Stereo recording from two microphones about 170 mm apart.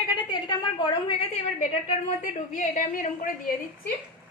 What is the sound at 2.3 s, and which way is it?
A woman's voice, 50° left (ahead or behind).